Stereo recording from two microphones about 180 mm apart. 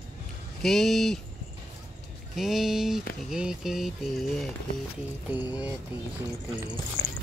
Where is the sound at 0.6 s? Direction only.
Centre (ahead or behind).